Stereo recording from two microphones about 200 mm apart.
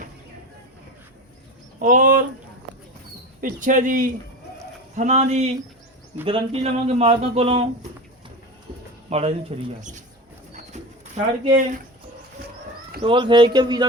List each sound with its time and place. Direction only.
1.8 s speech: 40° right (ahead or behind)
3.4 s speech: 40° right (ahead or behind)
9.0 s speech: 30° right (ahead or behind)
10.5 s pigeon: 35° right (ahead or behind)
13.0 s speech: 25° right (ahead or behind)